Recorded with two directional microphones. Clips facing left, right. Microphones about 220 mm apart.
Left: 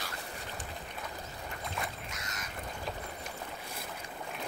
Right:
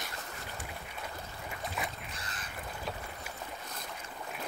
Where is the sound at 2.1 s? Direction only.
30° right (ahead or behind).